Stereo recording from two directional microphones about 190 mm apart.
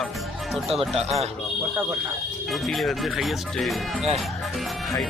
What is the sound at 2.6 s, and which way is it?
Speech, centre (ahead or behind).